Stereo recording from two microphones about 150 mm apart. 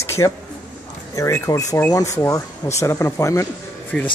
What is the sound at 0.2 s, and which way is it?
Speech, 20° left (ahead or behind).